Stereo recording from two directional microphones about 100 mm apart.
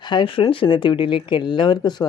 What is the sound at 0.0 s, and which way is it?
Speech, 50° left (ahead or behind).